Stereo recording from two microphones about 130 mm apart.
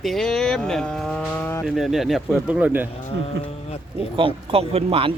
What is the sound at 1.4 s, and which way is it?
Cattle, 15° left (ahead or behind).